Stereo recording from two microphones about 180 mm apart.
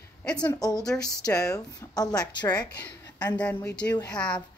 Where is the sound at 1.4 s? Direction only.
20° left (ahead or behind).